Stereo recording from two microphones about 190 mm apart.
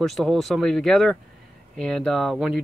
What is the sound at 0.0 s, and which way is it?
Speech, centre (ahead or behind).